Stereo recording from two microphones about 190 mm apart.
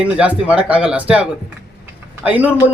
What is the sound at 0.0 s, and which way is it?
A man's voice, 5° right (ahead or behind).